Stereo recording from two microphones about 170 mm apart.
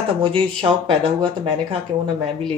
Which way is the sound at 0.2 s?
30° right (ahead or behind).